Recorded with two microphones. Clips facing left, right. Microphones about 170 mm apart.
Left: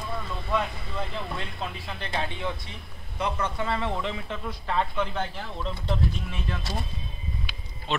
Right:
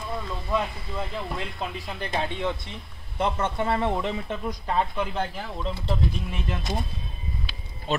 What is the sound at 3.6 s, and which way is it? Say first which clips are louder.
Speech: right 5 dB; 50° right (ahead or behind).